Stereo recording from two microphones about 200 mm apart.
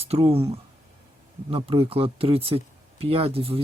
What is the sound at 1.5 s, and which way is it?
Speech, 25° right (ahead or behind).